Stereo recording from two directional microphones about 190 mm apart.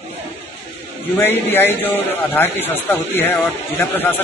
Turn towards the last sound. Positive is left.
turn(degrees=10)  # may be behind; listen again after turning